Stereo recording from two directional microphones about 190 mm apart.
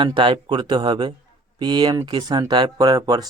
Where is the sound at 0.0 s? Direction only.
25° right (ahead or behind).